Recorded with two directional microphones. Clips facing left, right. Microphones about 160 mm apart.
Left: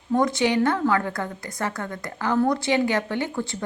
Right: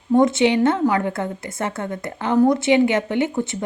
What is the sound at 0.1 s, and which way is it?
A woman's voice, 25° right (ahead or behind).